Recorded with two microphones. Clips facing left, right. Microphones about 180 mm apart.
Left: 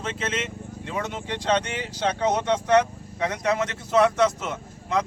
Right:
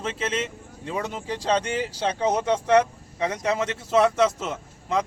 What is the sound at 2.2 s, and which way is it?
Speech, 10° right (ahead or behind).